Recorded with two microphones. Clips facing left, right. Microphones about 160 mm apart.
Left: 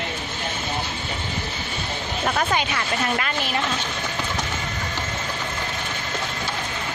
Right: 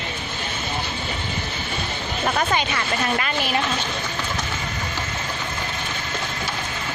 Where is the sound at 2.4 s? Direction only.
Centre (ahead or behind).